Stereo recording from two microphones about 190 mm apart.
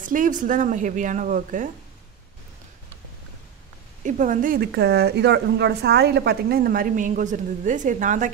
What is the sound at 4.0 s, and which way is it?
A woman's voice, 45° right (ahead or behind).